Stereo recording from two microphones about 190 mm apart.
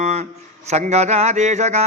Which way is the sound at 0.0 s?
35° right (ahead or behind).